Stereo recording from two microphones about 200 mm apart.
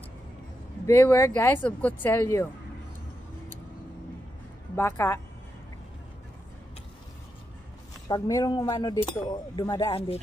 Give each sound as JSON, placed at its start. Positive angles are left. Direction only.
{"t": 0.8, "sound": "speech", "side_deg": 15}
{"t": 4.7, "sound": "speech", "side_deg": 15}
{"t": 8.1, "sound": "speech", "side_deg": 20}